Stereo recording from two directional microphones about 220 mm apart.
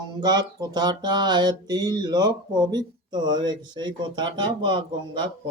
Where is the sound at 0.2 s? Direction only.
20° right (ahead or behind).